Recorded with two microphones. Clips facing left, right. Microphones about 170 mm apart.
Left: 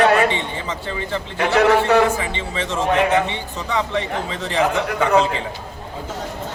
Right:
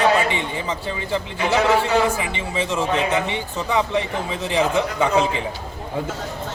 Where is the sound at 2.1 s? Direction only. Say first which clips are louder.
Even; 15° right (ahead or behind).